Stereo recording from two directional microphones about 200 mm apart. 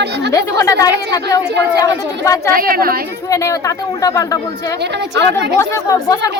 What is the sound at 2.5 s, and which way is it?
Speech, 45° right (ahead or behind).